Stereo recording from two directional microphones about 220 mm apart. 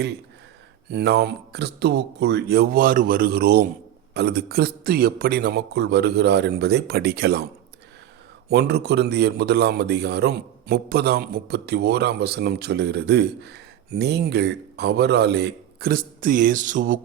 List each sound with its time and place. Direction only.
0.9 s a man's voice: 50° right (ahead or behind)
8.4 s a man's voice: 50° right (ahead or behind)